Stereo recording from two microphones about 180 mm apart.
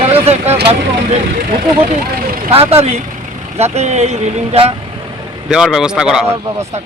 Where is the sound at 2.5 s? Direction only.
35° right (ahead or behind).